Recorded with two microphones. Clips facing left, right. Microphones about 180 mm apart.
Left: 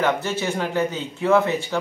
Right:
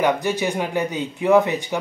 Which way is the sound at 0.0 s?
15° right (ahead or behind).